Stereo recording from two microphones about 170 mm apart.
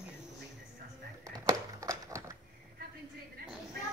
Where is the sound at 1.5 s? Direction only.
20° right (ahead or behind).